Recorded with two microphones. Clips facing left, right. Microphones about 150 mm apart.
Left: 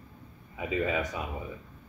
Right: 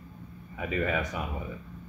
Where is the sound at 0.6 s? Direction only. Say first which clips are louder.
Even; 15° left (ahead or behind).